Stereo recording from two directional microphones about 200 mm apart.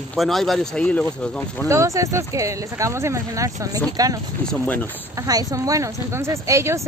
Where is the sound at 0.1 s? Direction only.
Centre (ahead or behind).